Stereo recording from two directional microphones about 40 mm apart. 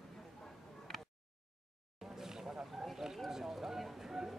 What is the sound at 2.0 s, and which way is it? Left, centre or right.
Vehicle, centre.